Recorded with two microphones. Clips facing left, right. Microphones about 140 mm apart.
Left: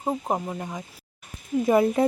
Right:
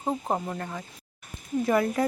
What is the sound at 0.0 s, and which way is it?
Speech, 10° left (ahead or behind).